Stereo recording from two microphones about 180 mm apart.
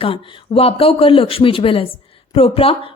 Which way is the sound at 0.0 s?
30° left (ahead or behind).